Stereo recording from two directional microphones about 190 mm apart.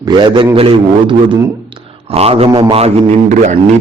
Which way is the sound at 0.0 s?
25° right (ahead or behind).